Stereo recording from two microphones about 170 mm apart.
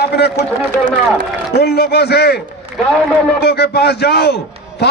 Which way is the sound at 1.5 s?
70° left (ahead or behind).